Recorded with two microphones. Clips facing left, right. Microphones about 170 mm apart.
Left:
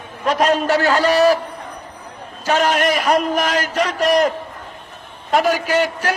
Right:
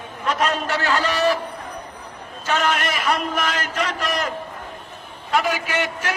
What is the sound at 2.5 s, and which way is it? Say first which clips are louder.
A man's voice: left 6 dB; 40° left (ahead or behind).